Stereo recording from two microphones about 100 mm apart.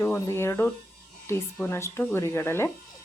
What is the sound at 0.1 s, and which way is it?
Speech, 25° left (ahead or behind).